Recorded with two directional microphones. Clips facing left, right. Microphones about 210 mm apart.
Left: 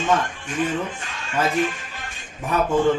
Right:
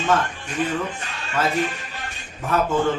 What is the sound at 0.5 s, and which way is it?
Speech, 35° right (ahead or behind).